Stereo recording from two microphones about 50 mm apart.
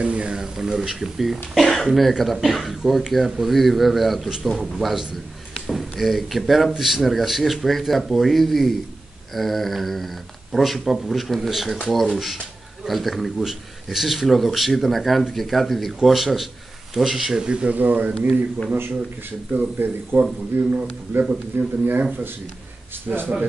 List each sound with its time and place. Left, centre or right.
0.0 s speech: right
0.3 s speech: centre
17.4 s speech: centre
17.7 s speech: right
19.5 s speech: right
23.0 s speech: right